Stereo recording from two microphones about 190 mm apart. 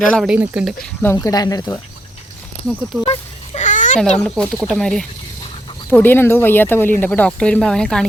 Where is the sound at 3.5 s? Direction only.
40° left (ahead or behind).